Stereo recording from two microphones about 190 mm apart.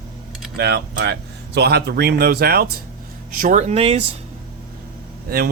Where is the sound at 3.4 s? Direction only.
35° right (ahead or behind).